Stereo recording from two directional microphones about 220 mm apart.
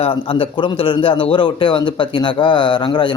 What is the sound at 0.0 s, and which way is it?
A man's voice, 25° left (ahead or behind).